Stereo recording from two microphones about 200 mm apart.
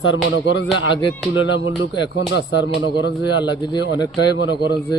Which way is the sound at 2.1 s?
60° left (ahead or behind).